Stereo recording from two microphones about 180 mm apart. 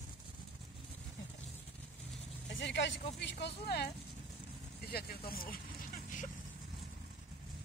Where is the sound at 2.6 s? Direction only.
80° left; by 5.5 s 55° left (ahead or behind).